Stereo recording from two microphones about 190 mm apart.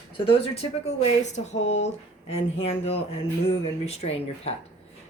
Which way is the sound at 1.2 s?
35° left (ahead or behind).